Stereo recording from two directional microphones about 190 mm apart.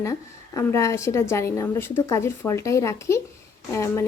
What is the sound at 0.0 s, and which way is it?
A woman's voice, 15° left (ahead or behind).